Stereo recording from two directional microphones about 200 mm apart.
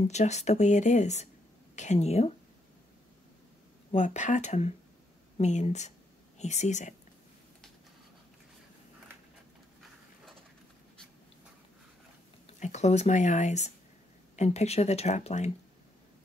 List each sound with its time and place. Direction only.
0.1 s speech: 35° left (ahead or behind)
3.9 s speech: 35° left (ahead or behind)
12.4 s speech: 35° left (ahead or behind)